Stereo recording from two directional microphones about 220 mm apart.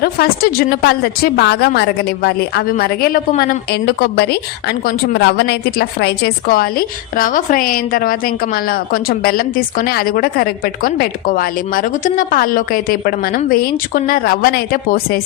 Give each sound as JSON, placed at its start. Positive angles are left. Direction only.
{"t": 0.0, "sound": "a woman's voice", "side_deg": 45}